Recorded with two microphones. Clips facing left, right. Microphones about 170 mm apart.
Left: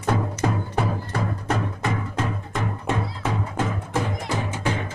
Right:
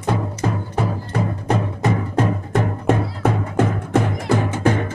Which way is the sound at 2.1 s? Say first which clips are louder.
Right 8 dB; 50° right (ahead or behind).